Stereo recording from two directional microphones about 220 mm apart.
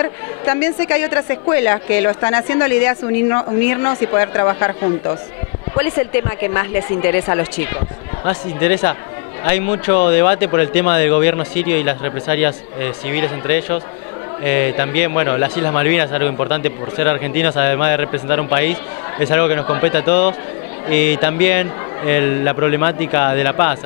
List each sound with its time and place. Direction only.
0.0 s a woman's voice: 15° left (ahead or behind)